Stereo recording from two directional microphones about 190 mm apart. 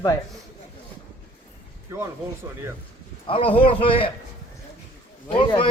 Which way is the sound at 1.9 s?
15° right (ahead or behind).